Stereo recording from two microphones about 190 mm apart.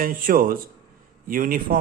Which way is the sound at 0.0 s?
50° right (ahead or behind).